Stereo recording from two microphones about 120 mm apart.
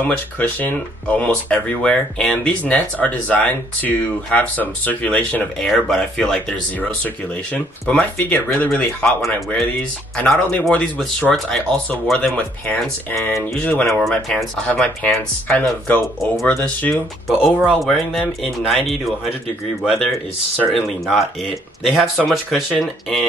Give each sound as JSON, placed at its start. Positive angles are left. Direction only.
{"t": 0.0, "sound": "speech", "side_deg": 15}
{"t": 5.6, "sound": "speech", "side_deg": 0}
{"t": 7.9, "sound": "speech", "side_deg": 10}
{"t": 13.1, "sound": "speech", "side_deg": 25}
{"t": 13.7, "sound": "speech", "side_deg": 10}
{"t": 16.9, "sound": "speech", "side_deg": 0}